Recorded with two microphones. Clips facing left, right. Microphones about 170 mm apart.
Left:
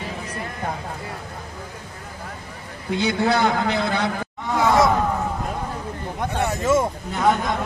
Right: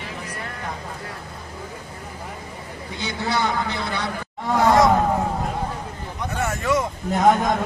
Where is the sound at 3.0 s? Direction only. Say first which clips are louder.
Left 5 dB; 55° left (ahead or behind).